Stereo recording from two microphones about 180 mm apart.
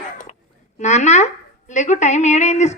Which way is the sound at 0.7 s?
40° left (ahead or behind).